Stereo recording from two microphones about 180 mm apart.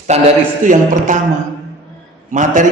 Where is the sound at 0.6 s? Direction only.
45° right (ahead or behind).